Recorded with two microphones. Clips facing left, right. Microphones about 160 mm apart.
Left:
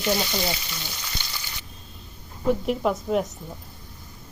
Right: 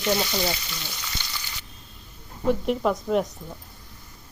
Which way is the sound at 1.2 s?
15° left (ahead or behind).